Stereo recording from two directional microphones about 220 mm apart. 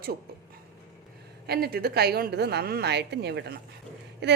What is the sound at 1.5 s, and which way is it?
A woman's voice, 45° right (ahead or behind).